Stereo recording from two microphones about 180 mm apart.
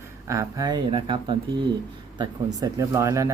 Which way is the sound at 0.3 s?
20° right (ahead or behind).